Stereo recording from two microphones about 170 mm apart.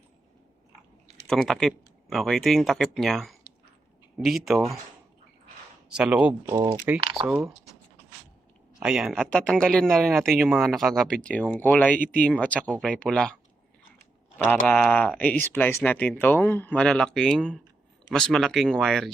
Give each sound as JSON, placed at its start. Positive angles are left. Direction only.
{"t": 1.3, "sound": "speech", "side_deg": 5}
{"t": 5.9, "sound": "speech", "side_deg": -5}
{"t": 7.0, "sound": "speech", "side_deg": -30}
{"t": 7.3, "sound": "speech", "side_deg": -5}
{"t": 8.8, "sound": "speech", "side_deg": -5}
{"t": 14.5, "sound": "speech", "side_deg": 5}